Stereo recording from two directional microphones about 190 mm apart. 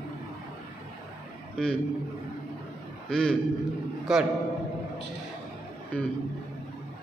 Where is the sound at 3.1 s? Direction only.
5° left (ahead or behind).